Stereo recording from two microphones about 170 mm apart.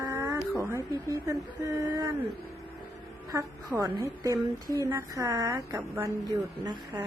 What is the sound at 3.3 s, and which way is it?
A woman's voice, 20° right (ahead or behind).